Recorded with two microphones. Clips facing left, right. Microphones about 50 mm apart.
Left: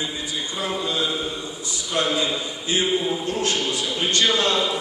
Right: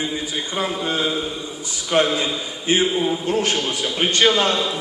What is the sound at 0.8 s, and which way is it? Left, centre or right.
A man's voice, right.